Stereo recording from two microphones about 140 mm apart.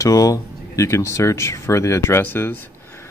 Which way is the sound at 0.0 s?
25° left (ahead or behind).